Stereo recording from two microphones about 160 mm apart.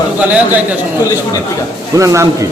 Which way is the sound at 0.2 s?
10° right (ahead or behind).